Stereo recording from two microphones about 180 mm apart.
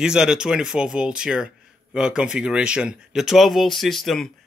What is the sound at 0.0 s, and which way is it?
Speech, 5° right (ahead or behind).